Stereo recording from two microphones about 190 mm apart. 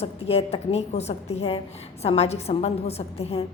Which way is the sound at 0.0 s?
30° left (ahead or behind).